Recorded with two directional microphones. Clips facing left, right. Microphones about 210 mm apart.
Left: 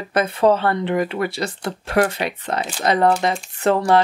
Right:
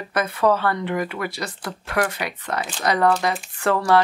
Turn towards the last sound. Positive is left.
turn(degrees=20)  # may be behind; listen again after turning